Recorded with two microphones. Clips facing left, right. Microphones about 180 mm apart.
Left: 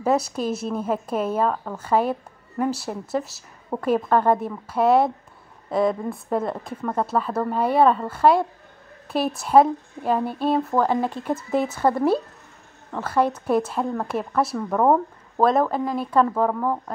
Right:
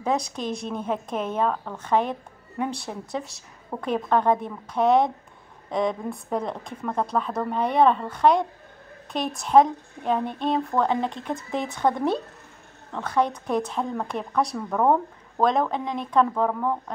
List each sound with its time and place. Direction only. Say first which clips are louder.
0.0 s a woman's voice: left 4 dB; 5° left (ahead or behind)